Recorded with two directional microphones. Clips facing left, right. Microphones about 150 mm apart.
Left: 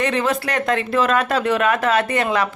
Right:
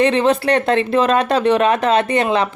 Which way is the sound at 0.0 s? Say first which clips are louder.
Right 6 dB; 25° right (ahead or behind).